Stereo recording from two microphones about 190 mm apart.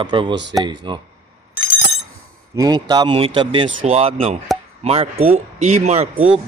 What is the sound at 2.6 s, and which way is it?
Speech, 20° right (ahead or behind).